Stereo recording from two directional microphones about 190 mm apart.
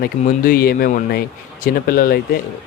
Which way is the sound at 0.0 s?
50° left (ahead or behind).